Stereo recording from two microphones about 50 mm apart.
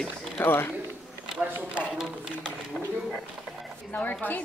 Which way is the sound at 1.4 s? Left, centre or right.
Right.